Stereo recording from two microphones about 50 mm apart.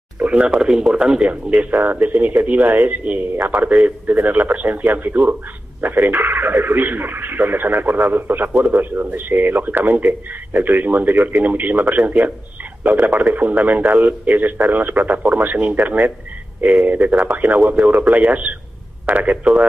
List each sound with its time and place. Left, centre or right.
0.2 s speech: right
1.3 s speech: right